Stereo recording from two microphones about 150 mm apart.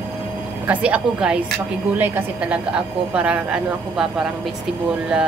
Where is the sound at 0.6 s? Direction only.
10° right (ahead or behind).